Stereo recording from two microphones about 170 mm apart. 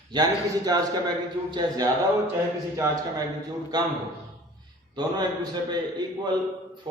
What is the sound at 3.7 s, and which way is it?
Speech, 25° right (ahead or behind).